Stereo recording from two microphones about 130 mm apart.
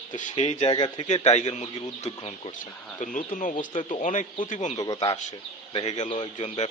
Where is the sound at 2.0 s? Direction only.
50° left (ahead or behind).